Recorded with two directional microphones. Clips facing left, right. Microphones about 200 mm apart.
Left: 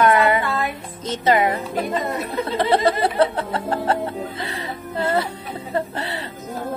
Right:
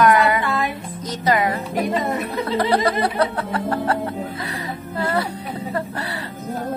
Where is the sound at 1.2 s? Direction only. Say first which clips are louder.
Left 2 dB; 25° left (ahead or behind).